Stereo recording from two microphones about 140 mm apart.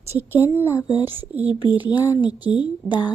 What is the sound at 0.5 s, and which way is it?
Speech, 20° left (ahead or behind).